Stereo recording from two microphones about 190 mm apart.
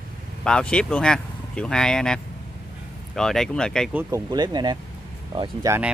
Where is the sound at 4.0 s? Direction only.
15° right (ahead or behind).